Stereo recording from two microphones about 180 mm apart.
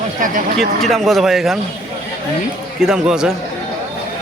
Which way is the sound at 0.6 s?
Centre (ahead or behind).